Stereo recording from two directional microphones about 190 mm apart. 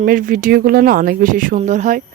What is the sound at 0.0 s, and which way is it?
Speech, 45° right (ahead or behind).